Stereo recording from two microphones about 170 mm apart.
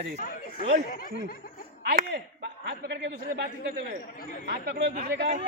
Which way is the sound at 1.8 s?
60° right (ahead or behind).